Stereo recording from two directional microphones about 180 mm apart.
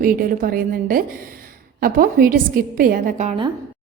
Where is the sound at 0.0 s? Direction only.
50° right (ahead or behind).